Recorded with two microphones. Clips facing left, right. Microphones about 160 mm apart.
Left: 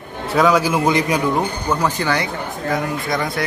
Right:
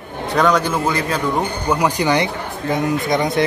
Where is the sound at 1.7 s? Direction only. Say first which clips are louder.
Right 5 dB; 15° right (ahead or behind).